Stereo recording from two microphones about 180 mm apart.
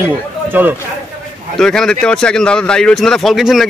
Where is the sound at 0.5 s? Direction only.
10° right (ahead or behind).